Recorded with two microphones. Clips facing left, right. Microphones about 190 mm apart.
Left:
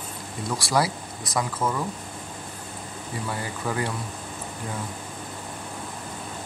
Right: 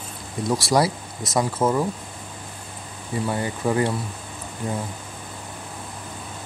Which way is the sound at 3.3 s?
25° right (ahead or behind).